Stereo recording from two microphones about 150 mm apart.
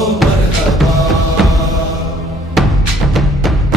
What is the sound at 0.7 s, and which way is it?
Music, centre (ahead or behind).